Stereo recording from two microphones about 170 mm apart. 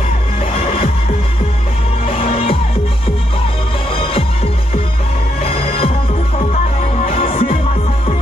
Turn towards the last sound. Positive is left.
turn(degrees=35)  # may be behind; listen again after turning